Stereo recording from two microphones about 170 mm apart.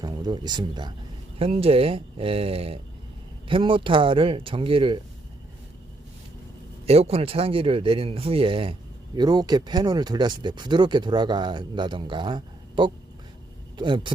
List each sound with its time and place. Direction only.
0.0 s speech: 25° right (ahead or behind)
6.8 s speech: 35° right (ahead or behind)